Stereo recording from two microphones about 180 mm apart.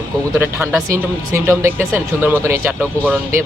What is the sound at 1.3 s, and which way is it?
Speech, 15° right (ahead or behind).